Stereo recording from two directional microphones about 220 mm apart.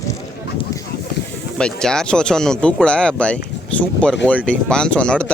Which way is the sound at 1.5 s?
5° left (ahead or behind).